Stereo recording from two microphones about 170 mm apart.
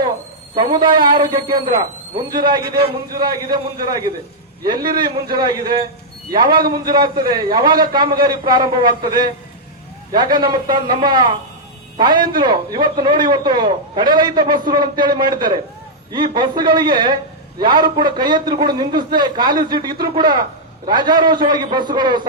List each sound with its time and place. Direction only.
0.5 s a man's voice: 30° right (ahead or behind)
6.8 s a man's voice: 25° right (ahead or behind)